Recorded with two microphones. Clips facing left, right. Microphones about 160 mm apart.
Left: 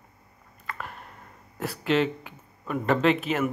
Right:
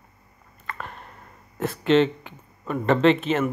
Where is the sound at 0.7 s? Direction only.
5° left (ahead or behind).